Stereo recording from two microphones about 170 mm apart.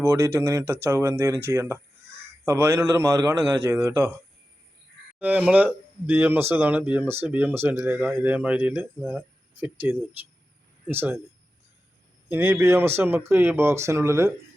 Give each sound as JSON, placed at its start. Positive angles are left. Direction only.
{"t": 0.0, "sound": "speech", "side_deg": -15}
{"t": 5.2, "sound": "speech", "side_deg": -5}
{"t": 12.3, "sound": "speech", "side_deg": -10}